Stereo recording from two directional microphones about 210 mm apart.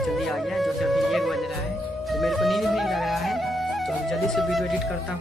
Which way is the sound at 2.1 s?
Centre (ahead or behind).